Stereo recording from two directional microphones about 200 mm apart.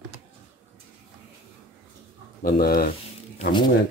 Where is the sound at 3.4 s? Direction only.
25° left (ahead or behind).